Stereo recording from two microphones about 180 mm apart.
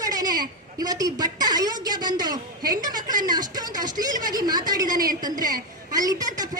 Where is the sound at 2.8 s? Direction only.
20° right (ahead or behind).